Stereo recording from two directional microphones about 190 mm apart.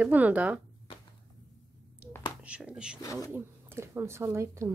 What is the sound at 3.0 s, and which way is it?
Speech, 15° left (ahead or behind).